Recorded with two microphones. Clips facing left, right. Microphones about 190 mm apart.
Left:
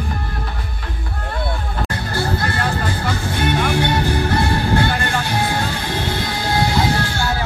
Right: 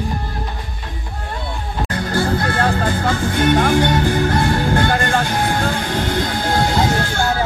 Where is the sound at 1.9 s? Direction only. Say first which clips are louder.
Right 5 dB; 50° right (ahead or behind).